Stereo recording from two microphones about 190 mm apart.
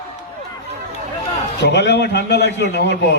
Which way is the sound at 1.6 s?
65° left (ahead or behind).